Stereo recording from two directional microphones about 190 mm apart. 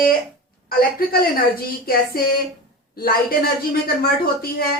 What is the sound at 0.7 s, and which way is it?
Speech, 50° left (ahead or behind).